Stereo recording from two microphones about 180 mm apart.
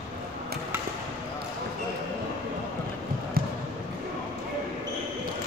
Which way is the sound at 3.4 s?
55° right (ahead or behind).